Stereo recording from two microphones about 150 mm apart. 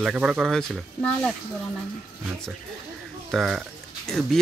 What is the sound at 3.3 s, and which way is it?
Speech, centre (ahead or behind).